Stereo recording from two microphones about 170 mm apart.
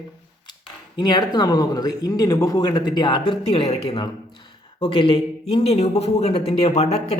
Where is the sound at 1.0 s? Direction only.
25° left (ahead or behind).